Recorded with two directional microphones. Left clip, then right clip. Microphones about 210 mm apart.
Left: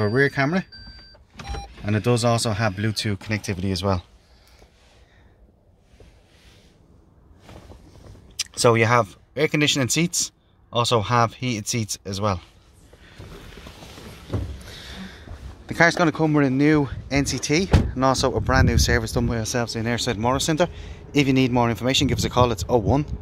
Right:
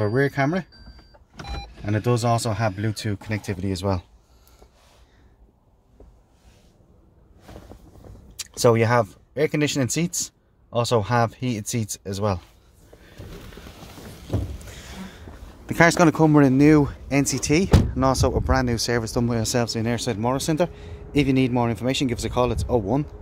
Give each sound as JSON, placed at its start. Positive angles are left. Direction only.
{"t": 0.0, "sound": "speech", "side_deg": 5}
{"t": 8.4, "sound": "speech", "side_deg": -10}
{"t": 14.7, "sound": "speech", "side_deg": -15}
{"t": 17.9, "sound": "speech", "side_deg": -10}